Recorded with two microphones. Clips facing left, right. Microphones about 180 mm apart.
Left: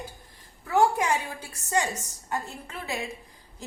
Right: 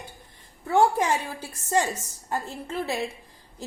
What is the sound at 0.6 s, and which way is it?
A woman's voice, 30° right (ahead or behind).